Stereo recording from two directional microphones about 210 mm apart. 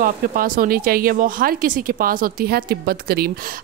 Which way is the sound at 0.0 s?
45° right (ahead or behind).